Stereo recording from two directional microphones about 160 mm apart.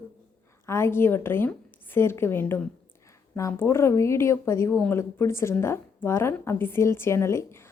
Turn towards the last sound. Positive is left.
turn(degrees=15)  # may be behind; listen again after turning